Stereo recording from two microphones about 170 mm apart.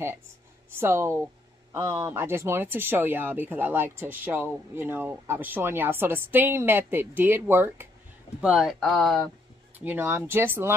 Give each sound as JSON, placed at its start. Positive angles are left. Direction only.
{"t": 0.7, "sound": "speech", "side_deg": -15}
{"t": 9.8, "sound": "speech", "side_deg": -10}